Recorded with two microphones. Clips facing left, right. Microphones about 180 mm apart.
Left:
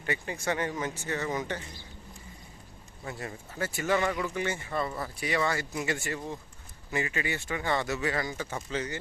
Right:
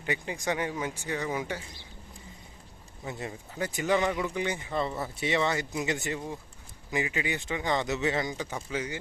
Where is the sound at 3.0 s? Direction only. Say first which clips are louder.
Right 1 dB; 20° right (ahead or behind).